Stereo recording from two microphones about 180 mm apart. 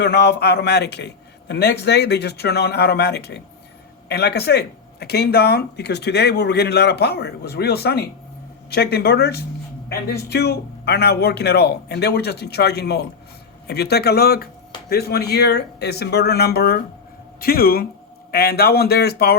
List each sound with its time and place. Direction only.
0.0 s speech: 70° left (ahead or behind)